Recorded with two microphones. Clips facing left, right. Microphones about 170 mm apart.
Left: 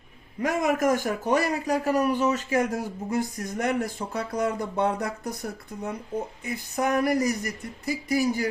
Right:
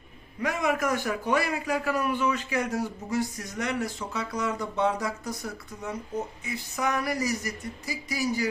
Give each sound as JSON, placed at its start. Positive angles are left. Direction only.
{"t": 0.4, "sound": "a man's voice", "side_deg": 45}